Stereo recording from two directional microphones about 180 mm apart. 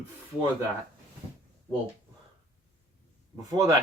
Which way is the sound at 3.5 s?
20° right (ahead or behind).